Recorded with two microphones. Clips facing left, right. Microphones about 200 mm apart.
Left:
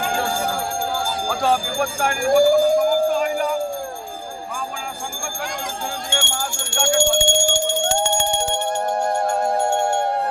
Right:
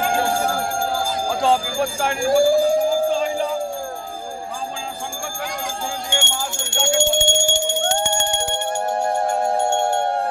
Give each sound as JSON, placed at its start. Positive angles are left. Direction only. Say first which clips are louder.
{"t": 1.3, "sound": "jingle bell", "louder": "right 1 dB", "side_deg": -25}
{"t": 6.0, "sound": "alarm", "louder": "even", "side_deg": -20}